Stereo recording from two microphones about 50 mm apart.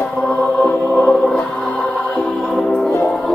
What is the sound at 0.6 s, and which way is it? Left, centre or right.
Music, left.